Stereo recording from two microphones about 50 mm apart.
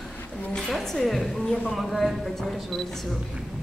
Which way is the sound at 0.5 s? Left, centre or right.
Centre.